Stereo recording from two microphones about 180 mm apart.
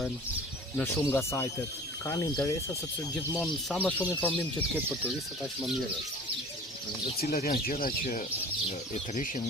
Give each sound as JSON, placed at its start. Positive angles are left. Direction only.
{"t": 0.8, "sound": "speech", "side_deg": 15}
{"t": 3.4, "sound": "speech", "side_deg": 5}
{"t": 4.9, "sound": "speech", "side_deg": -5}
{"t": 7.0, "sound": "speech", "side_deg": 55}